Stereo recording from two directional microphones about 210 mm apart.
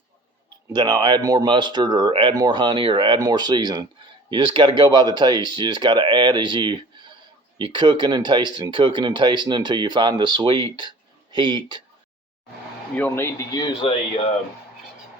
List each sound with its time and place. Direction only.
0.7 s speech: 20° right (ahead or behind)
13.0 s speech: 10° left (ahead or behind)